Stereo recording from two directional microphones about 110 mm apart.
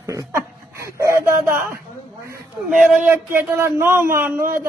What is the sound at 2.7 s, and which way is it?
Speech, 15° right (ahead or behind).